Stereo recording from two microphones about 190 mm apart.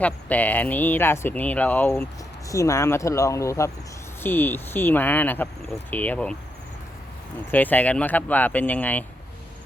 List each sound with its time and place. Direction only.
0.0 s speech: 10° left (ahead or behind)
7.5 s speech: 10° left (ahead or behind)